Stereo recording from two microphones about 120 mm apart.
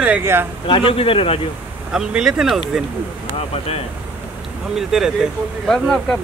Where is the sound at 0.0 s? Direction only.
15° right (ahead or behind).